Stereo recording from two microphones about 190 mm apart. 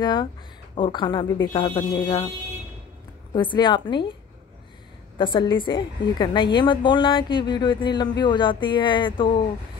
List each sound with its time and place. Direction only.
0.0 s a woman's voice: 25° left (ahead or behind)
3.3 s a woman's voice: 25° left (ahead or behind)
5.1 s a woman's voice: 25° left (ahead or behind)